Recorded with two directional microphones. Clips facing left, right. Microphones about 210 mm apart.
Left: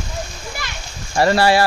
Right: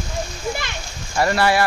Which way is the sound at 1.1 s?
30° left (ahead or behind).